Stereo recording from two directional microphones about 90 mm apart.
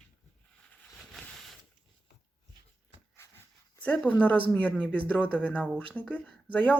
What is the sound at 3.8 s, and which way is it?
Speech, 15° left (ahead or behind).